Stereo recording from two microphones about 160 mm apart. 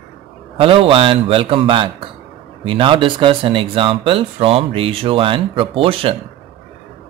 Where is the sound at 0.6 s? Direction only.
35° right (ahead or behind).